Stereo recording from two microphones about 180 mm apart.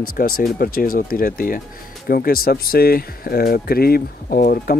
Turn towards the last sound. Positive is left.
turn(degrees=55)  # may be behind; listen again after turning